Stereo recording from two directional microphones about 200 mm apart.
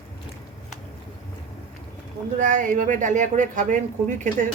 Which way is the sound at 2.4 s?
40° right (ahead or behind).